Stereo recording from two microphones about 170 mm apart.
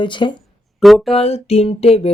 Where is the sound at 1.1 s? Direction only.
35° left (ahead or behind).